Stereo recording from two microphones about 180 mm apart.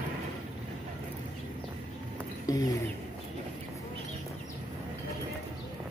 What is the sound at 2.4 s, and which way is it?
Speech, 20° left (ahead or behind).